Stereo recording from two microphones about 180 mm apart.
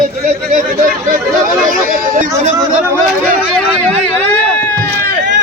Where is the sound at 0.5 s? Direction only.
50° right (ahead or behind).